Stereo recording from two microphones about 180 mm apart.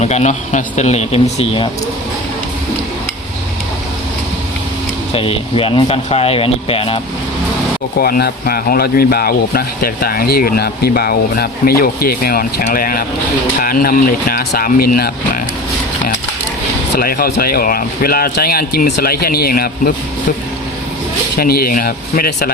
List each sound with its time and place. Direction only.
0.0 s speech: 40° left (ahead or behind)
5.1 s speech: 30° left (ahead or behind)
7.9 s speech: 55° left (ahead or behind)
16.9 s speech: 55° left (ahead or behind)
21.3 s speech: 60° left (ahead or behind)